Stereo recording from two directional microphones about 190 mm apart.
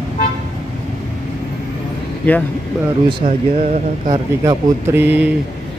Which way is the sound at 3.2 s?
40° right (ahead or behind).